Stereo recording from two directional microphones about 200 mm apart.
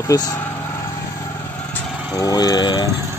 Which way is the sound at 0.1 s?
20° left (ahead or behind).